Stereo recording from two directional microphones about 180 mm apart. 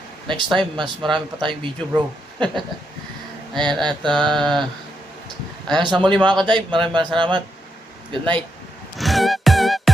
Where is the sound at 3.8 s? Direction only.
25° right (ahead or behind).